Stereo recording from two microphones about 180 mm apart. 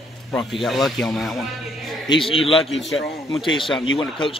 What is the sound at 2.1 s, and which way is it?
A man's voice, 30° left (ahead or behind).